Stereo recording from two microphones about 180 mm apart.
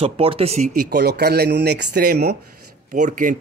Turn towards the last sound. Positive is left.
turn(degrees=-45)  # may be behind; listen again after turning